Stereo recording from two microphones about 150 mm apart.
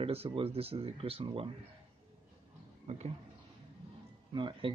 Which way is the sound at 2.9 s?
45° right (ahead or behind).